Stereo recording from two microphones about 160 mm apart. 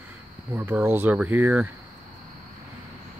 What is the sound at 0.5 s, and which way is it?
Speech, 15° right (ahead or behind).